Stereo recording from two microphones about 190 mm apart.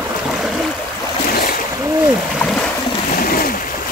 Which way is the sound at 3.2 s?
50° left (ahead or behind).